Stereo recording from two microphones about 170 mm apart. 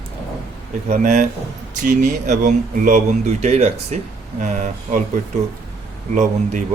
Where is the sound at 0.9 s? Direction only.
45° right (ahead or behind).